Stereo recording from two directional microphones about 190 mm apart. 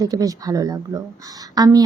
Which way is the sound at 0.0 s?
20° right (ahead or behind).